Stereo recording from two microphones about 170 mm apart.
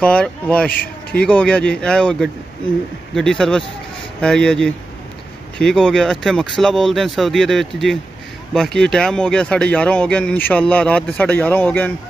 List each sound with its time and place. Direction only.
0.0 s speech: 5° left (ahead or behind)